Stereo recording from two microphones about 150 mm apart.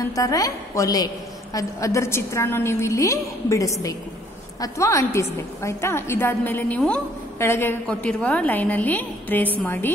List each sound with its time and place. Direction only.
0.1 s a woman's voice: 25° left (ahead or behind)